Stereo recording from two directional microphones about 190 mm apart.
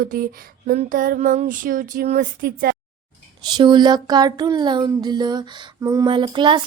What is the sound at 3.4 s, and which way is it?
Speech, 25° right (ahead or behind).